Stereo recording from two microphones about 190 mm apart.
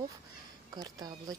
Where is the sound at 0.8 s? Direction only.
20° right (ahead or behind).